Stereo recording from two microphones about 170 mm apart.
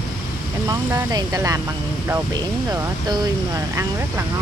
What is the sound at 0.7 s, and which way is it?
Speech, 15° right (ahead or behind).